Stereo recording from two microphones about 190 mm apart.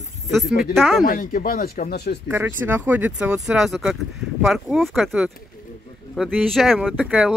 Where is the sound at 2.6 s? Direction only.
10° right (ahead or behind).